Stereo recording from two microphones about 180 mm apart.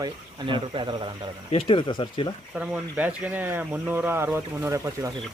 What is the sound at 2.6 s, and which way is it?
Speech, 10° right (ahead or behind).